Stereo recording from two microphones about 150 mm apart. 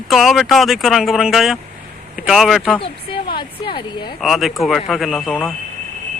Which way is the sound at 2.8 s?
35° left (ahead or behind).